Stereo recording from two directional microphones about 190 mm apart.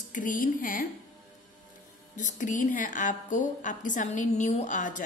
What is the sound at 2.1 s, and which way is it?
A woman's voice, 40° left (ahead or behind).